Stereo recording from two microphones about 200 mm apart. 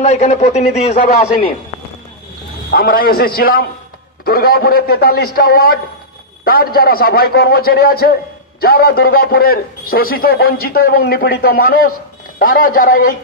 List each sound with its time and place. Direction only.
0.0 s a man's voice: 35° left (ahead or behind)
2.7 s a man's voice: 50° left (ahead or behind)